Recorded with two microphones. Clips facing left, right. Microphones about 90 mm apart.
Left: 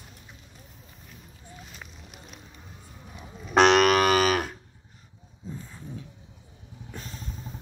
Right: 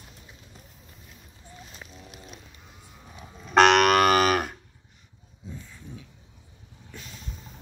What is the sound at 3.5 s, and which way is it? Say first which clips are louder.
Moo: right 1 dB; 55° right (ahead or behind).